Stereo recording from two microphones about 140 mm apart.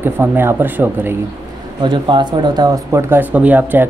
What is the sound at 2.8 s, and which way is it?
Speech, 15° right (ahead or behind).